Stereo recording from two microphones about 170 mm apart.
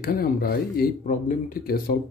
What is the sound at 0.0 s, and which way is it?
Speech, 60° left (ahead or behind).